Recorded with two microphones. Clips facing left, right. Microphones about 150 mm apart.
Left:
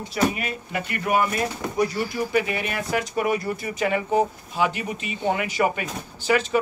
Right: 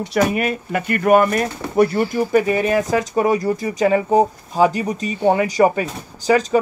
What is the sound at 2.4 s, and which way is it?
Speech, 40° right (ahead or behind).